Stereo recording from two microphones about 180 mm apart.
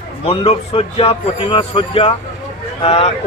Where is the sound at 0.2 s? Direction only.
30° left (ahead or behind).